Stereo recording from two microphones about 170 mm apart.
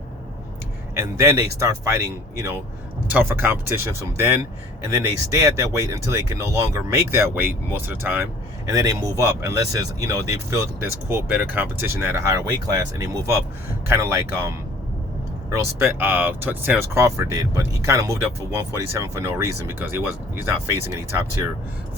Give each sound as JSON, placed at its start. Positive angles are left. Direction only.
{"t": 0.9, "sound": "speech", "side_deg": -15}